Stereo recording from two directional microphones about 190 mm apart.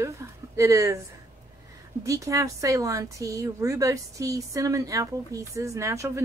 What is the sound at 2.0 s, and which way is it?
Speech, 15° right (ahead or behind).